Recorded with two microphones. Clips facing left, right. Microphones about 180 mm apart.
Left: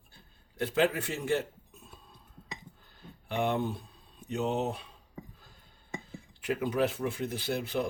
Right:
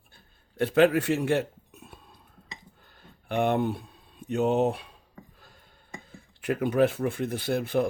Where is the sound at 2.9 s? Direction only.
55° right (ahead or behind).